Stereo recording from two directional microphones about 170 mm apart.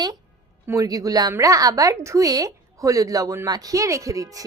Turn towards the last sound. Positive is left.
turn(degrees=-20)  # may be behind; listen again after turning